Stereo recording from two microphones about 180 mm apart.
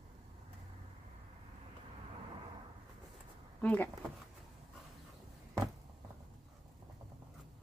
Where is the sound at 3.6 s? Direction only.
10° left (ahead or behind).